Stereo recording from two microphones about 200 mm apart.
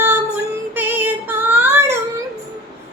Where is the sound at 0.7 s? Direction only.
10° right (ahead or behind).